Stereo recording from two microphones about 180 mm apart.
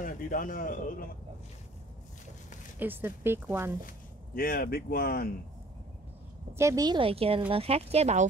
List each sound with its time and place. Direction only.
0.0 s a man's voice: 50° left (ahead or behind)
2.8 s speech: 10° right (ahead or behind)
4.4 s speech: 55° left (ahead or behind)
6.5 s speech: 15° right (ahead or behind); by 8.3 s 35° right (ahead or behind)